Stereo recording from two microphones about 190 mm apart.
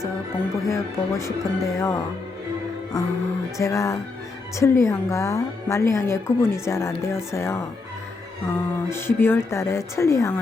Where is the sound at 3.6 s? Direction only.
15° left (ahead or behind).